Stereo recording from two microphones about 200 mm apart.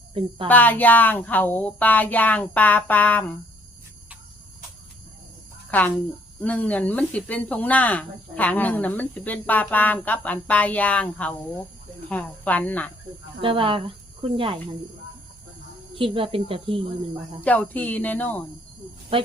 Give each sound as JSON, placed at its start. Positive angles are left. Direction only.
{"t": 0.4, "sound": "speech", "side_deg": 10}
{"t": 5.7, "sound": "speech", "side_deg": 10}
{"t": 13.4, "sound": "speech", "side_deg": -25}
{"t": 16.0, "sound": "speech", "side_deg": -25}
{"t": 17.4, "sound": "speech", "side_deg": 5}
{"t": 19.1, "sound": "speech", "side_deg": -25}